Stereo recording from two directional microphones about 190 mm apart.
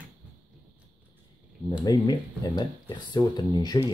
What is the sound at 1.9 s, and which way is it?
Speech, 20° left (ahead or behind).